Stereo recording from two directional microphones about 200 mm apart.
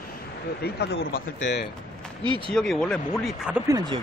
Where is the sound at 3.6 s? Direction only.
15° right (ahead or behind).